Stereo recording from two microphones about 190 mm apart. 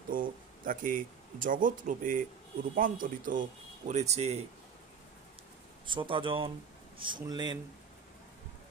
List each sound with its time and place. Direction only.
0.1 s speech: 45° right (ahead or behind)
5.9 s speech: 25° right (ahead or behind)